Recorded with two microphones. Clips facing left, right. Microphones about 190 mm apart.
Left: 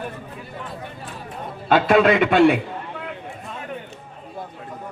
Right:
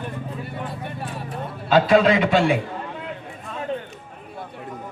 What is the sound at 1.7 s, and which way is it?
Speech, 55° left (ahead or behind).